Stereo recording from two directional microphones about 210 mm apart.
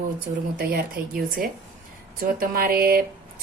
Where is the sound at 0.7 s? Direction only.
45° right (ahead or behind).